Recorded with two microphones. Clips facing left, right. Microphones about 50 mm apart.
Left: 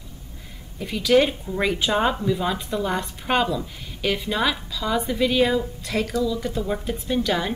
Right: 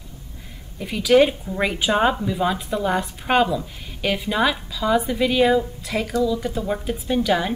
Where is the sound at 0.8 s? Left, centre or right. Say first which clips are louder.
Right 3 dB; centre.